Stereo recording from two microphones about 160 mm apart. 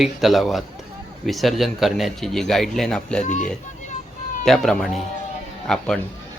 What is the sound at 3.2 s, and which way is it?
Speech, 50° left (ahead or behind).